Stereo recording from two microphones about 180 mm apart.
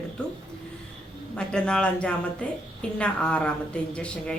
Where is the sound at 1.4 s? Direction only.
5° left (ahead or behind).